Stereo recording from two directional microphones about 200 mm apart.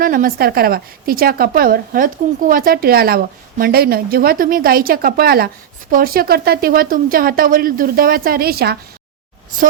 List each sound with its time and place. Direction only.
0.0 s a woman's voice: 45° right (ahead or behind)